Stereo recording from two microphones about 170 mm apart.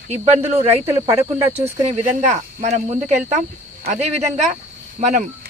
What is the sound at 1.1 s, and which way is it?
Speech, 15° right (ahead or behind).